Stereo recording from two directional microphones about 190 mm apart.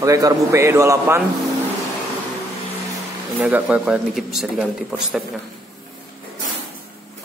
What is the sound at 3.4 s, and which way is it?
Speech, 5° right (ahead or behind).